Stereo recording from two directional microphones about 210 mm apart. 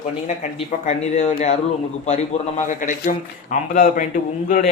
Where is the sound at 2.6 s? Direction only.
35° left (ahead or behind).